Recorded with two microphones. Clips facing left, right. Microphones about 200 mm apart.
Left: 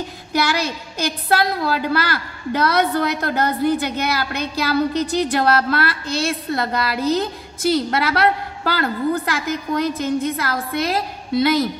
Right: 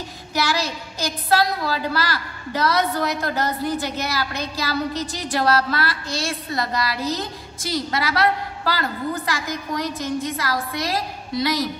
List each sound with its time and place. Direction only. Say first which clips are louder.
0.3 s a woman's voice: left 3 dB; 55° left (ahead or behind)